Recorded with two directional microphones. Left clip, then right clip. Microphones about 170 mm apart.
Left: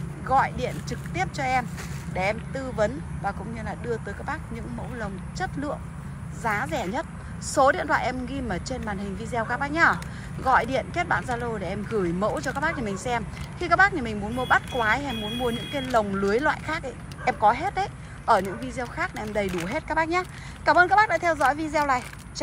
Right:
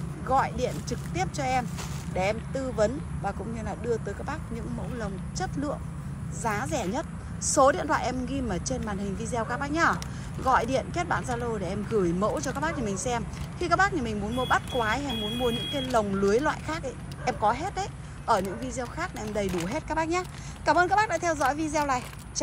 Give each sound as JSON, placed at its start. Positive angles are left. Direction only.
{"t": 0.3, "sound": "a woman's voice", "side_deg": -15}